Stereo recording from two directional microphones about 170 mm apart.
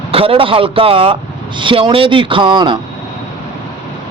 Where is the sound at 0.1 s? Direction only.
35° right (ahead or behind).